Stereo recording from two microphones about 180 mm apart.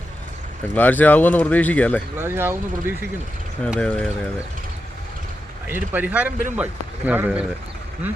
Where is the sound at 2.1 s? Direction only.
15° right (ahead or behind).